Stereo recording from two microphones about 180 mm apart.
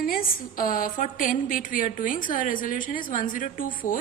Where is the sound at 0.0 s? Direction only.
50° left (ahead or behind).